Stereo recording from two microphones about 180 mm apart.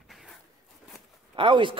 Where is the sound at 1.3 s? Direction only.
30° right (ahead or behind).